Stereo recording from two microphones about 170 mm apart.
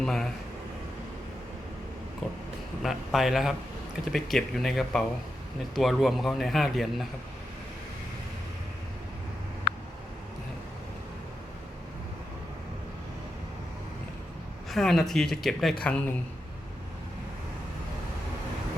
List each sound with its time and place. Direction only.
0.0 s speech: 5° left (ahead or behind)
2.8 s a man's voice: centre (ahead or behind)
9.7 s vehicle: 75° left (ahead or behind)
14.7 s a man's voice: centre (ahead or behind)